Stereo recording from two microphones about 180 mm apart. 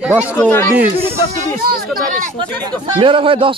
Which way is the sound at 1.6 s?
55° right (ahead or behind).